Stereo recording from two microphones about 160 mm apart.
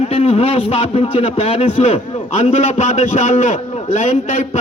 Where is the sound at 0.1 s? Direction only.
35° left (ahead or behind).